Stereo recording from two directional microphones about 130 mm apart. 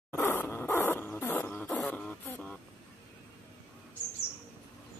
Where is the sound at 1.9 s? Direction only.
10° left (ahead or behind).